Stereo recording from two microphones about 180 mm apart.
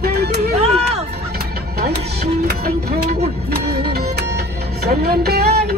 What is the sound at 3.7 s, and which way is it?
Music, 60° right (ahead or behind).